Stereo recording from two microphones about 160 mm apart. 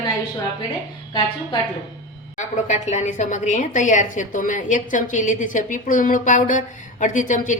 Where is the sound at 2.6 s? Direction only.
45° left (ahead or behind).